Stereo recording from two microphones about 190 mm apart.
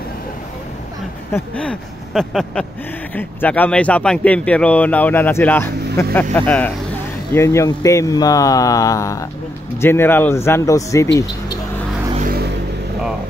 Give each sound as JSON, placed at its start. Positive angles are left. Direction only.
{"t": 1.3, "sound": "speech", "side_deg": 5}
{"t": 12.2, "sound": "vehicle", "side_deg": -55}